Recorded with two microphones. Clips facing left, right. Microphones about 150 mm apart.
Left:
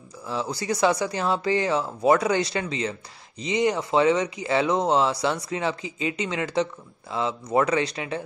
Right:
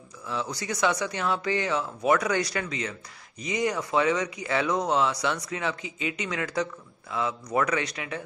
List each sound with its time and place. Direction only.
0.3 s speech: 30° left (ahead or behind)